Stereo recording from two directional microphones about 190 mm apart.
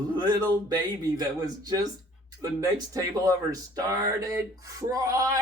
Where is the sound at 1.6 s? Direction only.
20° right (ahead or behind).